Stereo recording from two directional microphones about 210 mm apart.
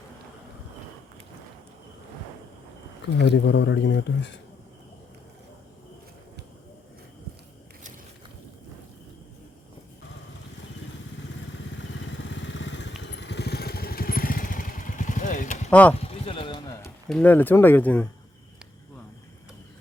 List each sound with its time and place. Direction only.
3.2 s speech: 60° left (ahead or behind)
11.8 s motorcycle: 60° left (ahead or behind)
13.0 s vehicle: 55° left (ahead or behind); by 15.7 s 35° left (ahead or behind)
15.7 s speech: 5° left (ahead or behind)
16.0 s a sound: 25° left (ahead or behind)
17.1 s speech: 5° left (ahead or behind)